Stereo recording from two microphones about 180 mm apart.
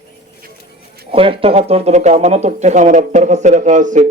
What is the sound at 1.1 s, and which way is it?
A man's voice, 30° right (ahead or behind).